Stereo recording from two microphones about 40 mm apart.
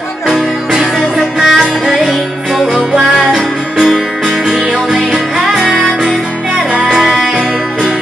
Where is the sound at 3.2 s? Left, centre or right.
Centre.